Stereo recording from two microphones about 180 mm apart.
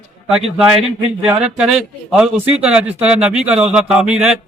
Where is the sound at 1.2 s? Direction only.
5° right (ahead or behind).